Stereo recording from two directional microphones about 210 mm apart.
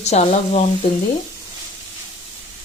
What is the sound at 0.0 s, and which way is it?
Speech, 30° left (ahead or behind).